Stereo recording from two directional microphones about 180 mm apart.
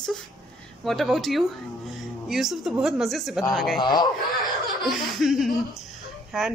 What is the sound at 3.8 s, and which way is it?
Speech, 25° left (ahead or behind).